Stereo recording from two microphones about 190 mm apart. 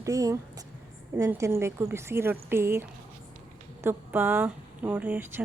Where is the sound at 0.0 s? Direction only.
15° right (ahead or behind).